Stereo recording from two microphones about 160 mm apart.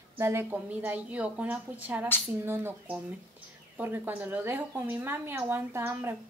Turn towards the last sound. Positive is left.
turn(degrees=-15)  # may be behind; listen again after turning